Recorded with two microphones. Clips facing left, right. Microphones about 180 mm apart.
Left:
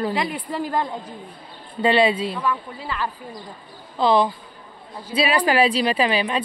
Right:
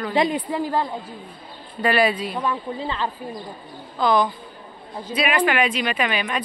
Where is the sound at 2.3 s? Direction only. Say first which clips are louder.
Right 1 dB; 25° right (ahead or behind).